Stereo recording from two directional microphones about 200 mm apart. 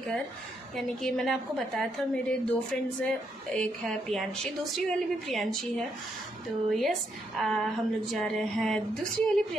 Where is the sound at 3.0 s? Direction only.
5° left (ahead or behind).